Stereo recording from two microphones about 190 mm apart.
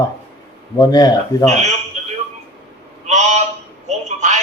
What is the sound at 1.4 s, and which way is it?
Speech, 40° right (ahead or behind).